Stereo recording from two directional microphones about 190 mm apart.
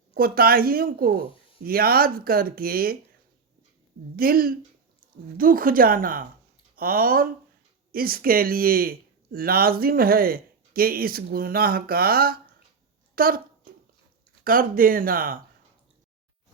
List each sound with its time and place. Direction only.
0.1 s speech: 50° right (ahead or behind)
4.2 s speech: 50° right (ahead or behind)
14.4 s speech: 50° right (ahead or behind)